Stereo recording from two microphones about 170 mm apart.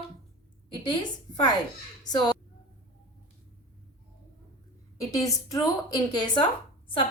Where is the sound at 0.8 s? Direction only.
25° left (ahead or behind).